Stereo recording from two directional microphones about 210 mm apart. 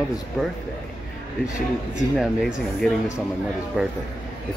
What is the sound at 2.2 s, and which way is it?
Speech, centre (ahead or behind).